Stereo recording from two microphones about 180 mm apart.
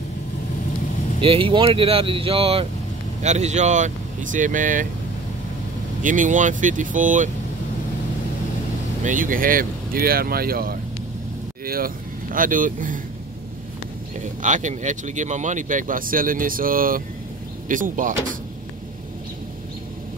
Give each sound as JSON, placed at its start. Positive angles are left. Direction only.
{"t": 1.2, "sound": "speech", "side_deg": -30}
{"t": 6.0, "sound": "speech", "side_deg": -45}
{"t": 9.0, "sound": "speech", "side_deg": -50}
{"t": 14.4, "sound": "speech", "side_deg": -45}